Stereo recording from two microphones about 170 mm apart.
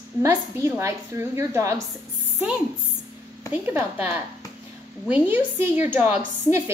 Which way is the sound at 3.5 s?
10° right (ahead or behind).